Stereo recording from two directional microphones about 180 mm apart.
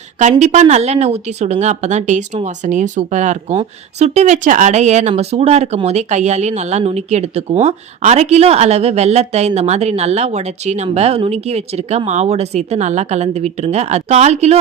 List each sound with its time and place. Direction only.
0.2 s speech: 40° right (ahead or behind)